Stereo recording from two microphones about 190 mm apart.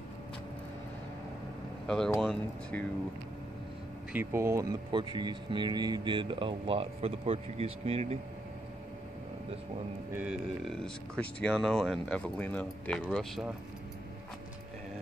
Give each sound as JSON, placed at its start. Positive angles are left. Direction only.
{"t": 2.1, "sound": "speech", "side_deg": 0}
{"t": 4.1, "sound": "speech", "side_deg": -10}
{"t": 10.1, "sound": "speech", "side_deg": -5}